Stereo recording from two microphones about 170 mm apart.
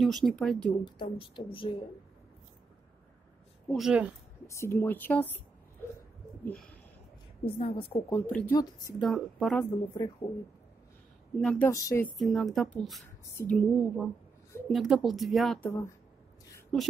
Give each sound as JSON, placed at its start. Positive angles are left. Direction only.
{"t": 0.0, "sound": "speech", "side_deg": 0}
{"t": 1.1, "sound": "a woman's voice", "side_deg": 30}
{"t": 3.7, "sound": "speech", "side_deg": -5}
{"t": 4.5, "sound": "speech", "side_deg": 15}
{"t": 6.4, "sound": "speech", "side_deg": 5}
{"t": 7.4, "sound": "a woman's voice", "side_deg": 30}
{"t": 8.1, "sound": "speech", "side_deg": 10}
{"t": 9.6, "sound": "a woman's voice", "side_deg": 20}
{"t": 11.3, "sound": "speech", "side_deg": 5}
{"t": 11.7, "sound": "a woman's voice", "side_deg": 20}
{"t": 12.2, "sound": "speech", "side_deg": 0}
{"t": 16.7, "sound": "speech", "side_deg": 5}